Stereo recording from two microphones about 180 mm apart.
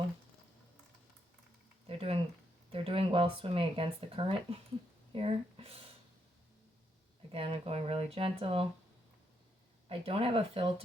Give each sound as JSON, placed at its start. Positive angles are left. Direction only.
{"t": 1.9, "sound": "a sound", "side_deg": -35}
{"t": 2.7, "sound": "speech", "side_deg": -30}
{"t": 7.3, "sound": "speech", "side_deg": -30}
{"t": 10.1, "sound": "speech", "side_deg": -30}